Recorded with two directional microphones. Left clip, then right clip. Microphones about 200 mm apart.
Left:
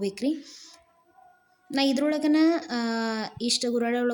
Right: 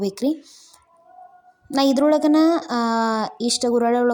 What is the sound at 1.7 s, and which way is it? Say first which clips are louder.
A woman's voice: right 8 dB; 20° right (ahead or behind).